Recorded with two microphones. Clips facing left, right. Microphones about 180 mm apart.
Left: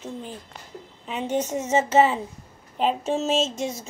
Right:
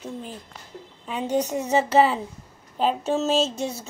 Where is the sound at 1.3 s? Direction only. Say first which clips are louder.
Right 1 dB; 35° right (ahead or behind).